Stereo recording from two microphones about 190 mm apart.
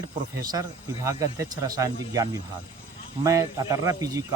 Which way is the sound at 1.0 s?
15° right (ahead or behind).